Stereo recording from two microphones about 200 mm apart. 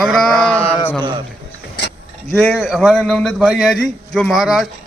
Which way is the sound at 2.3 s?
5° left (ahead or behind).